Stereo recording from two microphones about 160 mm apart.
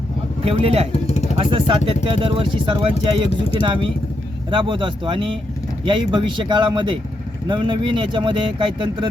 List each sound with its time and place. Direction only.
0.4 s speech: 40° right (ahead or behind)
0.9 s vehicle: 45° left (ahead or behind)
1.4 s speech: 35° right (ahead or behind)
3.2 s speech: 35° left (ahead or behind)
3.6 s speech: 30° right (ahead or behind)